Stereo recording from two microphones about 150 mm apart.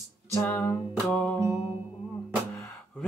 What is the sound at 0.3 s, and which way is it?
Music, 15° left (ahead or behind).